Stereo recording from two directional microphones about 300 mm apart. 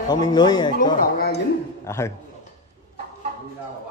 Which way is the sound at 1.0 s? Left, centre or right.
Left.